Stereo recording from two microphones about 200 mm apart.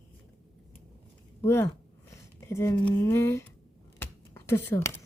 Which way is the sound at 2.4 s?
15° left (ahead or behind).